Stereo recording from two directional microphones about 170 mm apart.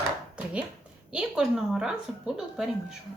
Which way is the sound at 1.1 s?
5° right (ahead or behind).